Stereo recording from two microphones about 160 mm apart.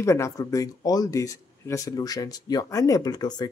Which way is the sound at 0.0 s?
20° left (ahead or behind).